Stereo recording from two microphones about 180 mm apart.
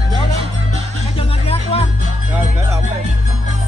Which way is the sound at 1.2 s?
35° left (ahead or behind).